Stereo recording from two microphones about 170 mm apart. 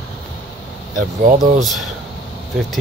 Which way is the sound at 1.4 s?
Centre (ahead or behind).